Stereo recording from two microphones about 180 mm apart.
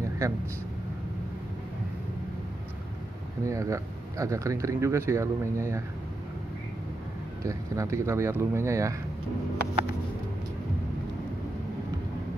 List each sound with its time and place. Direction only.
3.4 s speech: 15° right (ahead or behind)
7.4 s speech: 15° right (ahead or behind)